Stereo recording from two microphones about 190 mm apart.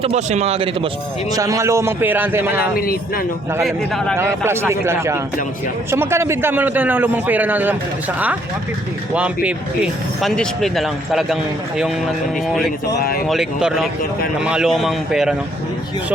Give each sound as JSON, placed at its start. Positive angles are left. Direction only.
{"t": 0.0, "sound": "speech", "side_deg": -35}
{"t": 1.3, "sound": "a man's voice", "side_deg": -15}
{"t": 2.7, "sound": "speech", "side_deg": 50}
{"t": 3.6, "sound": "speech", "side_deg": 0}
{"t": 4.2, "sound": "a man's voice", "side_deg": -15}
{"t": 9.1, "sound": "speech", "side_deg": -5}
{"t": 13.0, "sound": "speech", "side_deg": 50}
{"t": 13.2, "sound": "speech", "side_deg": 0}